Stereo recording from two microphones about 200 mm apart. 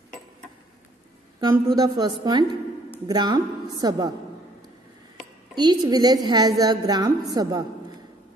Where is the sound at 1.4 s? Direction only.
15° right (ahead or behind).